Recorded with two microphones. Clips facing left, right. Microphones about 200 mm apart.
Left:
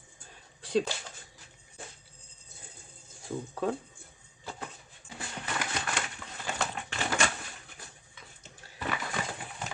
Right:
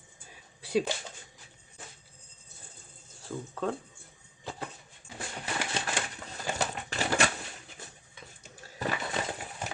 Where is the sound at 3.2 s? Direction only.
10° left (ahead or behind).